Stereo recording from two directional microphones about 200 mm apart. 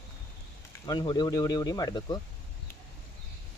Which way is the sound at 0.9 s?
20° left (ahead or behind).